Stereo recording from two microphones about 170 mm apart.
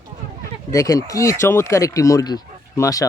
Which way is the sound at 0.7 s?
20° left (ahead or behind).